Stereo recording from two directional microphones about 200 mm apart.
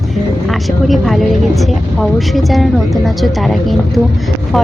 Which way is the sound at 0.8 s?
Centre (ahead or behind).